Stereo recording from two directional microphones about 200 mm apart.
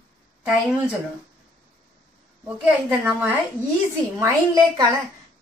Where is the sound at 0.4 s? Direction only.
5° right (ahead or behind).